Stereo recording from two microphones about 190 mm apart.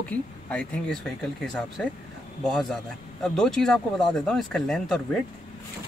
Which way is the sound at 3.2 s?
5° left (ahead or behind).